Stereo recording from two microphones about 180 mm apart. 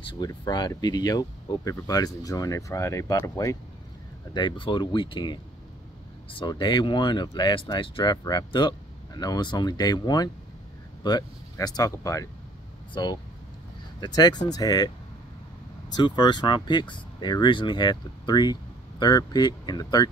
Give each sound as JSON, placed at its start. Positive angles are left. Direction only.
{"t": 0.0, "sound": "speech", "side_deg": 25}
{"t": 15.9, "sound": "speech", "side_deg": 25}